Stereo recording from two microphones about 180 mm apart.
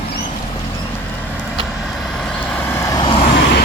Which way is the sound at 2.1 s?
5° left (ahead or behind).